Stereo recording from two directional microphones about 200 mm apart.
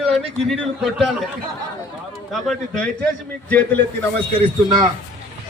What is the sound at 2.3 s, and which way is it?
Speech, centre (ahead or behind).